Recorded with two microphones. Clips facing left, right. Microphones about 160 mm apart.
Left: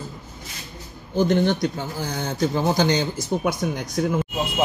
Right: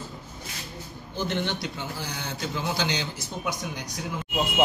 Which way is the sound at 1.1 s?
45° left (ahead or behind).